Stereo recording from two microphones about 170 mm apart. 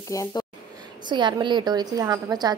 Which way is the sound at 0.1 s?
20° left (ahead or behind).